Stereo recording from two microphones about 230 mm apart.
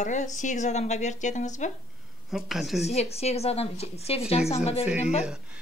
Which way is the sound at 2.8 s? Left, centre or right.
Left.